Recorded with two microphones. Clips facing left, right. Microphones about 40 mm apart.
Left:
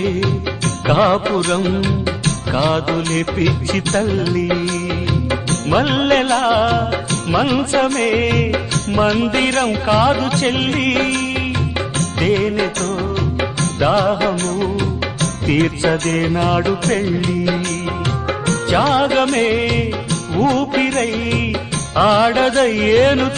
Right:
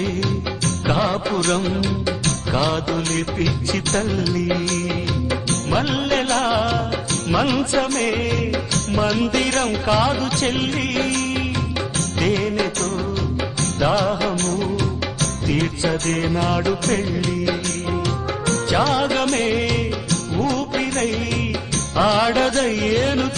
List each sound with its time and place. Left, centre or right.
0.0 s music: left
3.9 s music: left
6.4 s music: left
7.3 s music: left
7.6 s music: left
9.6 s music: left
10.1 s music: left
13.7 s music: left
22.2 s music: left
22.4 s music: left